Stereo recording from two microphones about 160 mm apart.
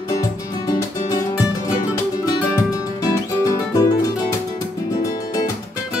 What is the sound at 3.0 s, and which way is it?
Music, 20° left (ahead or behind).